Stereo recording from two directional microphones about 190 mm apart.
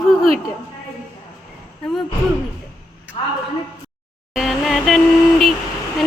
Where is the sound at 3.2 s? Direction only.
30° left (ahead or behind).